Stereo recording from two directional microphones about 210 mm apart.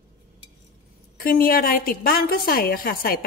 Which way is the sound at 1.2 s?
45° left (ahead or behind).